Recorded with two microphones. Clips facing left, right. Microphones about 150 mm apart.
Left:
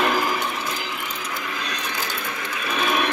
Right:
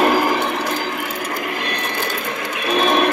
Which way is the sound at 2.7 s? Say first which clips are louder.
Right 7 dB; 55° right (ahead or behind).